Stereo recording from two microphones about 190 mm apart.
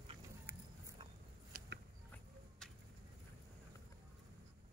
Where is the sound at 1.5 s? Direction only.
45° right (ahead or behind).